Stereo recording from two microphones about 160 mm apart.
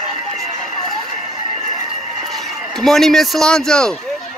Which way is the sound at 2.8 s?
Centre (ahead or behind).